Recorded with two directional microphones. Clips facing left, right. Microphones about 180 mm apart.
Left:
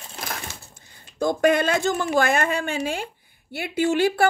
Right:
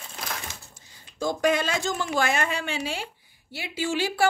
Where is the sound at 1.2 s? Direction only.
55° left (ahead or behind).